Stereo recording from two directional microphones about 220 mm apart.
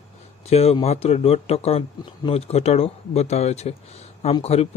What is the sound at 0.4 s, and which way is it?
Speech, 30° left (ahead or behind).